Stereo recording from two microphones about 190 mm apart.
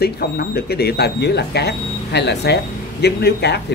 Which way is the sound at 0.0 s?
55° left (ahead or behind).